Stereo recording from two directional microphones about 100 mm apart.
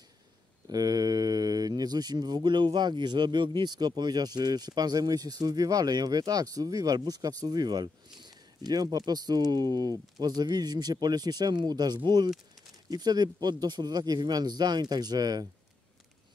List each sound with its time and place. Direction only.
0.7 s speech: 40° right (ahead or behind)